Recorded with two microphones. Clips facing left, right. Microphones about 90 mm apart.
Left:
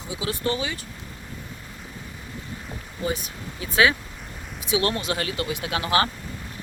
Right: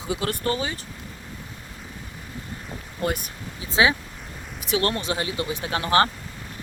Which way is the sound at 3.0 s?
60° right (ahead or behind).